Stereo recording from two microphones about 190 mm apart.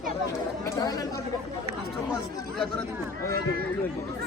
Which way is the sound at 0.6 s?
20° left (ahead or behind).